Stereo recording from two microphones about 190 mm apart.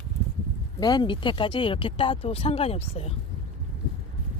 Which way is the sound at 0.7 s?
20° left (ahead or behind).